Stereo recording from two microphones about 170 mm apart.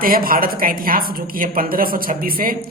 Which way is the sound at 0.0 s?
55° right (ahead or behind).